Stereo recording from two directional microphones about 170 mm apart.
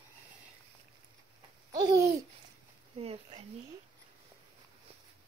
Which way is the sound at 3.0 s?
35° right (ahead or behind).